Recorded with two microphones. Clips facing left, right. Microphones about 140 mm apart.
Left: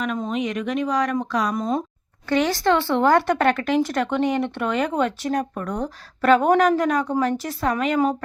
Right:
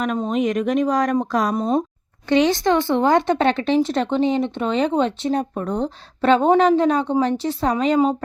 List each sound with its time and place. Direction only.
0.0 s speech: 40° right (ahead or behind)
1.5 s speech: 30° right (ahead or behind)